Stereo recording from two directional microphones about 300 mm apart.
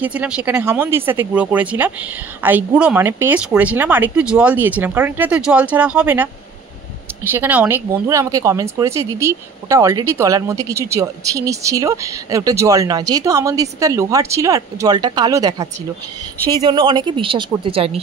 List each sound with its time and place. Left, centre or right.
0.0 s a woman's voice: centre
7.2 s speech: centre